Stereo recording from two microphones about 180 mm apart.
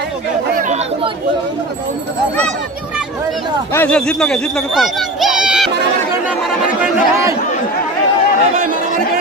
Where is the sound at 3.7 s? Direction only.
5° left (ahead or behind).